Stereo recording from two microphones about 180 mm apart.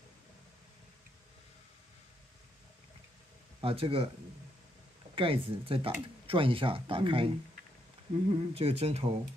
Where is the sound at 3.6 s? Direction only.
30° right (ahead or behind).